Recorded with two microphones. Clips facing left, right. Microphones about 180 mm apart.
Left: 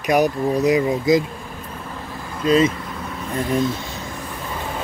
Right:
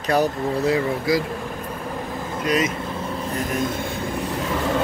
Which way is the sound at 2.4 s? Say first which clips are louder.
Left 6 dB; 30° left (ahead or behind).